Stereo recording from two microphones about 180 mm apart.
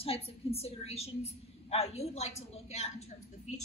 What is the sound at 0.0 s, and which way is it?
A woman's voice, 30° left (ahead or behind).